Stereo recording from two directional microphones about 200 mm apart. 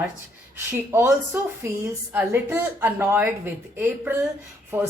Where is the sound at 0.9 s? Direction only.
10° right (ahead or behind).